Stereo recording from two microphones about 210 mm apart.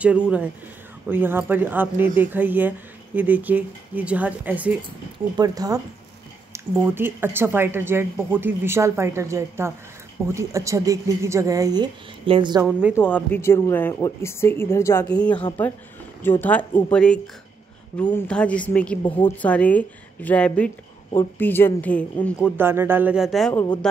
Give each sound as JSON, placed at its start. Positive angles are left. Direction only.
{"t": 0.0, "sound": "a woman's voice", "side_deg": -5}
{"t": 5.4, "sound": "speech", "side_deg": -15}
{"t": 12.9, "sound": "speech", "side_deg": 10}
{"t": 16.2, "sound": "a woman's voice", "side_deg": 10}
{"t": 22.6, "sound": "speech", "side_deg": -10}